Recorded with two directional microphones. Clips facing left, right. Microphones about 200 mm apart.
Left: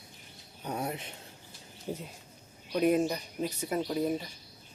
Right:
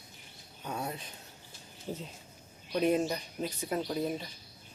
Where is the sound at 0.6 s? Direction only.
20° left (ahead or behind).